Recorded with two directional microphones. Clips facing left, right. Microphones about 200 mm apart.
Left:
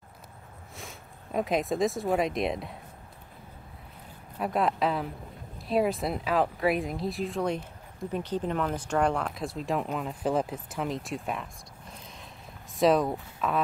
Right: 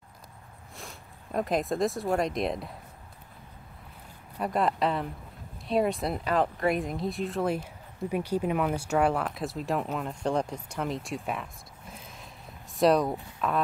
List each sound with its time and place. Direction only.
0.7 s speech: centre (ahead or behind)
4.4 s speech: centre (ahead or behind)
11.9 s a sound: centre (ahead or behind)
12.7 s speech: centre (ahead or behind)